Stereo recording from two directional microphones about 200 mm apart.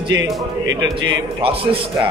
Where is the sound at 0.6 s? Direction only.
70° right (ahead or behind).